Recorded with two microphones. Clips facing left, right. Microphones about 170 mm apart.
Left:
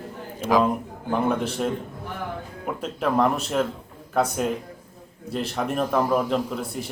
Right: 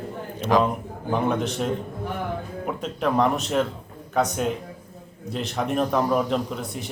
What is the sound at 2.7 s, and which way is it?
A man's voice, 5° left (ahead or behind).